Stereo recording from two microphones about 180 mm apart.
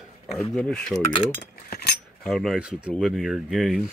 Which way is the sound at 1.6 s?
55° left (ahead or behind).